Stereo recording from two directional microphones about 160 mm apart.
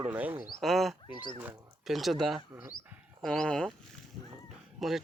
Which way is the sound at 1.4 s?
10° right (ahead or behind).